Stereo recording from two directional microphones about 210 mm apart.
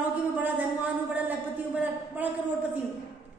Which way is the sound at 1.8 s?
10° right (ahead or behind).